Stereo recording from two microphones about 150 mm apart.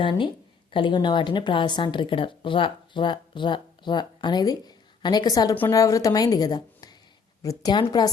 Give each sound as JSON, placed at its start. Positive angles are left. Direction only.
{"t": 0.0, "sound": "speech", "side_deg": 35}